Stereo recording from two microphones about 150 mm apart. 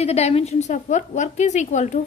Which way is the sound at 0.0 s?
45° left (ahead or behind).